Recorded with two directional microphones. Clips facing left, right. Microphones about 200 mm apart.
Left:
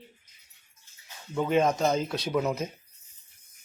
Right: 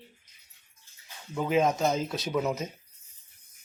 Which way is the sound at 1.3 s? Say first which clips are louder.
Left 1 dB; 5° right (ahead or behind).